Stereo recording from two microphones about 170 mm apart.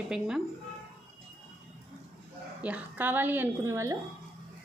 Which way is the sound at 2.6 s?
10° right (ahead or behind).